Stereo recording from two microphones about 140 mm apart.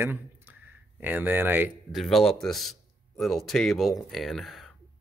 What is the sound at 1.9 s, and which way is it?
Speech, centre (ahead or behind).